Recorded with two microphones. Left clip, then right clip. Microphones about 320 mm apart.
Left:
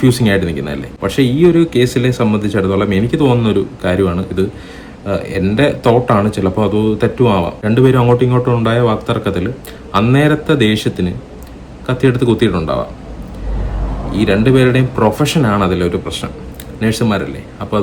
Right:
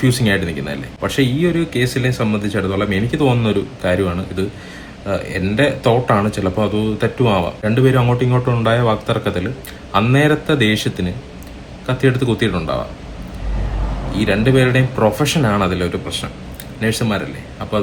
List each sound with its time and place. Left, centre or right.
0.0 s speech: centre
14.1 s speech: centre